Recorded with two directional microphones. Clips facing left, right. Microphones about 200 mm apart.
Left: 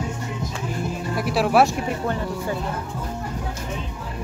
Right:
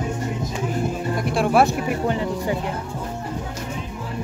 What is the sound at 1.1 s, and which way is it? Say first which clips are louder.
Speech: even; 5° left (ahead or behind).